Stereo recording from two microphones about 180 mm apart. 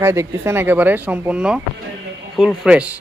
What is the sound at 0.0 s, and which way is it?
Speech, 15° right (ahead or behind).